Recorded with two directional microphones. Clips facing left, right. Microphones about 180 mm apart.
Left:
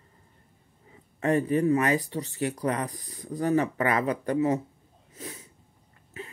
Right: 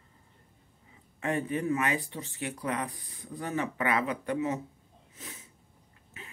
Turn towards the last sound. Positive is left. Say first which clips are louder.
# left 9 dB
turn(degrees=35)  # may be behind; listen again after turning